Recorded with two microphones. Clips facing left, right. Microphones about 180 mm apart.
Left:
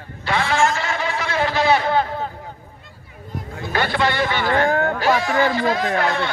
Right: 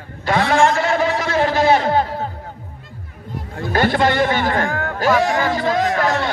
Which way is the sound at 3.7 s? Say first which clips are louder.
Right 4 dB; 45° right (ahead or behind).